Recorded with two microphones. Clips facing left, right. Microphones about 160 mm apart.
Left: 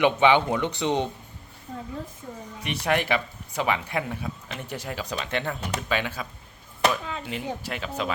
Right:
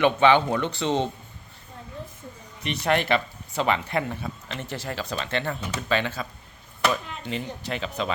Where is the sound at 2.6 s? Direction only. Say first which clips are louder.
Right 1 dB; 10° left (ahead or behind).